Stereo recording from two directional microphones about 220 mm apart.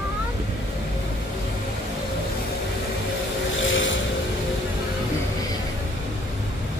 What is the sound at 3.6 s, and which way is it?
Vehicle, 60° left (ahead or behind).